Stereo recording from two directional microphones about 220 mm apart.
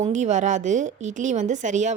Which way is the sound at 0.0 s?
30° right (ahead or behind).